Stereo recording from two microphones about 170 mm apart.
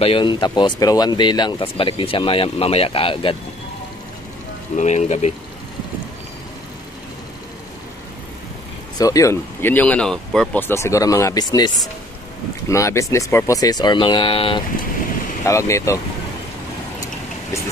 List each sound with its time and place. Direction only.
0.0 s speech: 30° left (ahead or behind)
4.7 s speech: 45° left (ahead or behind)
8.9 s speech: 20° left (ahead or behind)
15.4 s speech: 15° left (ahead or behind)